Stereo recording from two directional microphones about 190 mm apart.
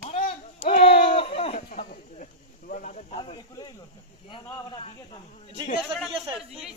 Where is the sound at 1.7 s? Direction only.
45° left (ahead or behind).